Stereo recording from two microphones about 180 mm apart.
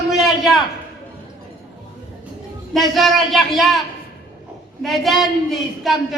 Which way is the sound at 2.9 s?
Centre (ahead or behind).